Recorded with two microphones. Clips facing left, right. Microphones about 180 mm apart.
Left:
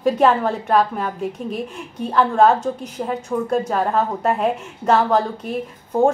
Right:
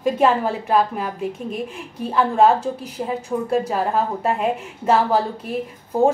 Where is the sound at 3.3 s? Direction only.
15° right (ahead or behind).